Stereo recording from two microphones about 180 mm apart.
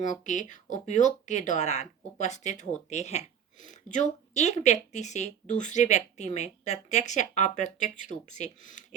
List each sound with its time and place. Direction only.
0.0 s speech: 45° left (ahead or behind)